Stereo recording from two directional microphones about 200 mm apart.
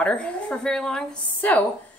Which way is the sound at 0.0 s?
5° left (ahead or behind).